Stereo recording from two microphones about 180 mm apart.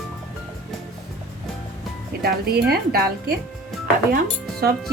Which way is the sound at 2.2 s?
65° right (ahead or behind).